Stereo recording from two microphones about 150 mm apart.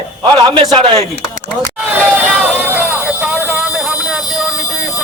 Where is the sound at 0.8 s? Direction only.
30° right (ahead or behind).